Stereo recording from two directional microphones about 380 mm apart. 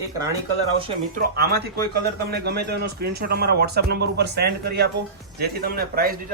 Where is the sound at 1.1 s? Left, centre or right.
Right.